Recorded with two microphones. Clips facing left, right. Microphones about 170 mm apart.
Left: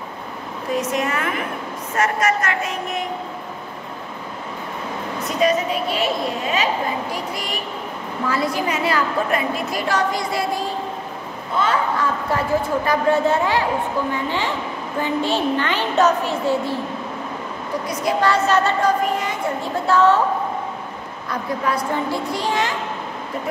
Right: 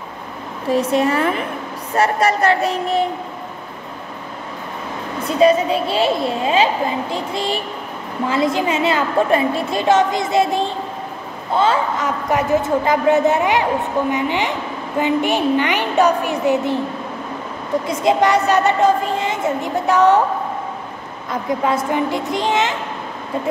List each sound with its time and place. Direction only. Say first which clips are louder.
0.7 s speech: right 6 dB; 30° right (ahead or behind)
5.2 s a child's voice: right 6 dB; 30° right (ahead or behind)
18.0 s a child's voice: right 3 dB; 20° right (ahead or behind)
21.3 s a child's voice: right 4 dB; 20° right (ahead or behind)